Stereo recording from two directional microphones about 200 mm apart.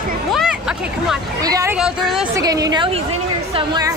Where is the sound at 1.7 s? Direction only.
Centre (ahead or behind).